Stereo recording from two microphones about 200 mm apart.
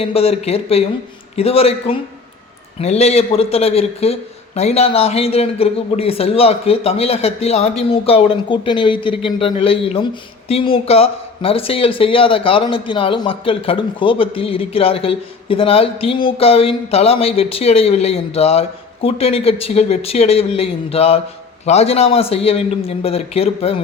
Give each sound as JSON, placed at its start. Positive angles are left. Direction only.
{"t": 0.0, "sound": "speech", "side_deg": 30}